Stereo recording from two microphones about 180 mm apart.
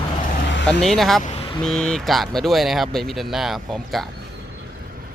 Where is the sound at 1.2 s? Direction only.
40° left (ahead or behind).